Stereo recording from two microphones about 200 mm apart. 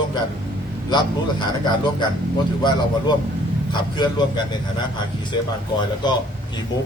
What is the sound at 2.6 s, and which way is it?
A man's voice, 20° left (ahead or behind).